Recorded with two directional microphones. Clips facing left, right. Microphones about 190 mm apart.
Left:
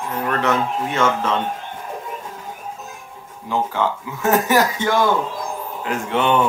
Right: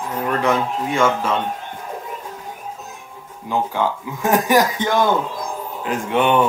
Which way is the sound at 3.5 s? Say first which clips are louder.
Even; 15° right (ahead or behind).